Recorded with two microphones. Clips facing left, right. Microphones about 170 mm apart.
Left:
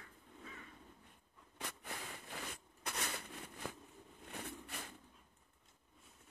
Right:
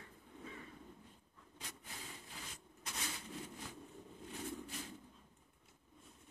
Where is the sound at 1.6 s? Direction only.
65° left (ahead or behind).